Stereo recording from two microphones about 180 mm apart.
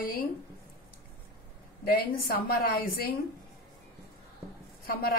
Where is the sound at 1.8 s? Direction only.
55° left (ahead or behind).